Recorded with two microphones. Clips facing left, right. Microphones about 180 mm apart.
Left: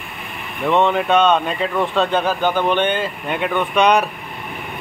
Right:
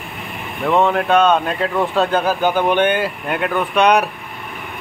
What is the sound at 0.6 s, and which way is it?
Speech, centre (ahead or behind).